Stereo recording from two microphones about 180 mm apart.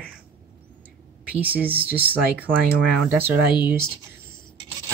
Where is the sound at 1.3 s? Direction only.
10° right (ahead or behind).